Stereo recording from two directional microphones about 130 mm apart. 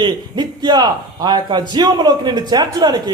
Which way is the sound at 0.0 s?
35° right (ahead or behind).